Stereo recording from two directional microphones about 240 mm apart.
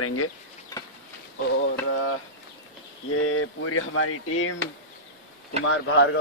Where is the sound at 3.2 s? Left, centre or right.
Left.